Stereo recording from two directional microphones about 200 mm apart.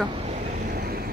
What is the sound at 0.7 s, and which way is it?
Vehicle, 50° right (ahead or behind).